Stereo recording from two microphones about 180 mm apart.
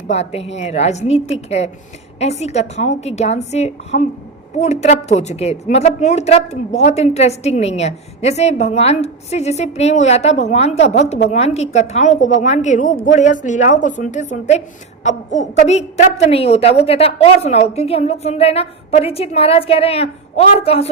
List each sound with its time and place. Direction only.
0.1 s a woman's voice: 35° left (ahead or behind)